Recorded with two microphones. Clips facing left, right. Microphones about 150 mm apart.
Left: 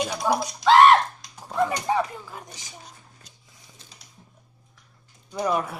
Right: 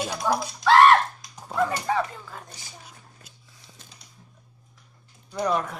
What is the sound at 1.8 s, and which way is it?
Speech, 15° left (ahead or behind).